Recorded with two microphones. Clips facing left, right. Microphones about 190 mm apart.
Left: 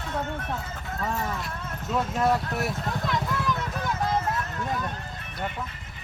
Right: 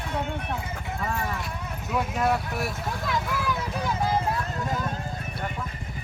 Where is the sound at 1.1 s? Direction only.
Centre (ahead or behind).